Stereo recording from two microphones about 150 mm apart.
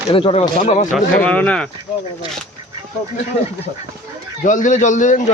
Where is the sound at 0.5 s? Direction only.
55° left (ahead or behind).